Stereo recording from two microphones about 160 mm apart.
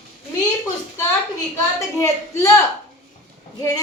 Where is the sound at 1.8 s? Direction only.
20° left (ahead or behind).